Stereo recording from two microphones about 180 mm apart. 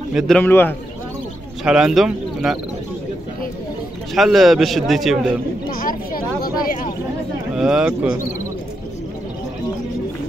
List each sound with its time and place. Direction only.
0.4 s a man's voice: 10° left (ahead or behind)
1.6 s a man's voice: 5° right (ahead or behind)
4.1 s a man's voice: centre (ahead or behind)
5.7 s a sound: 50° left (ahead or behind)
7.5 s a man's voice: 5° right (ahead or behind)